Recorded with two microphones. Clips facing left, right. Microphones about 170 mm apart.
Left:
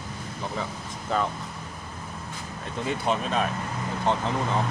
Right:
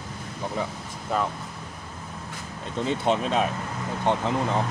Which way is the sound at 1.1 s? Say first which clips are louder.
Even; 10° right (ahead or behind).